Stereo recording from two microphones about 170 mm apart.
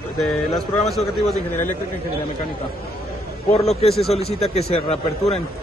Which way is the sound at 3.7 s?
35° left (ahead or behind).